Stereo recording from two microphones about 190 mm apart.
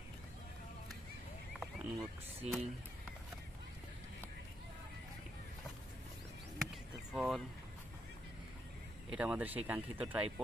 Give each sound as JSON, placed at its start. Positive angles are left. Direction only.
{"t": 1.6, "sound": "speech", "side_deg": -5}
{"t": 7.1, "sound": "vehicle", "side_deg": 0}
{"t": 9.1, "sound": "speech", "side_deg": -5}